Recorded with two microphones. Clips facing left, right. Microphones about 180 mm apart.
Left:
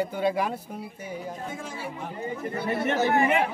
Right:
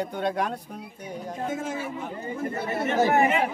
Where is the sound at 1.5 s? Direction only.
45° right (ahead or behind).